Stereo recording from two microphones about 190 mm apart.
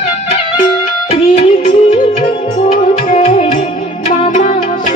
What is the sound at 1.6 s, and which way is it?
Music, 25° left (ahead or behind).